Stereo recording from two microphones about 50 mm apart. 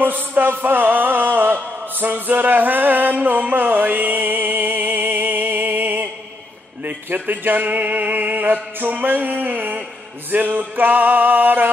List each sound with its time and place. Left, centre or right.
0.0 s music: right